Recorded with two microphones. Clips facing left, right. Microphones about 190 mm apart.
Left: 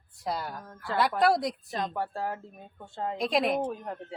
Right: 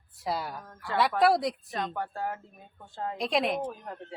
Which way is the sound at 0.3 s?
Centre (ahead or behind).